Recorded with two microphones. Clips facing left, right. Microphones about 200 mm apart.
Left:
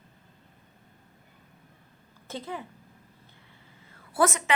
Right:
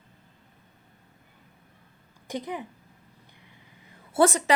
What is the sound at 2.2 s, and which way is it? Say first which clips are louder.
Speech: right 3 dB; 15° right (ahead or behind).